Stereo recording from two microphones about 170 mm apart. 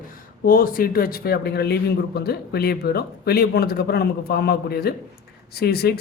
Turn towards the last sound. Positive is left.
turn(degrees=70)  # may be behind; listen again after turning